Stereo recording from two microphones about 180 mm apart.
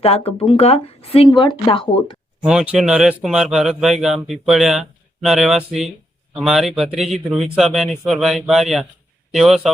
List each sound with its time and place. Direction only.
0.0 s speech: 35° left (ahead or behind)
2.4 s speech: 5° right (ahead or behind)